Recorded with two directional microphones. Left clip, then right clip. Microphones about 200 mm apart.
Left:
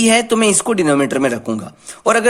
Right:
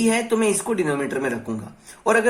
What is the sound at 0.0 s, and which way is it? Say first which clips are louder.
Speech: left 7 dB; 55° left (ahead or behind).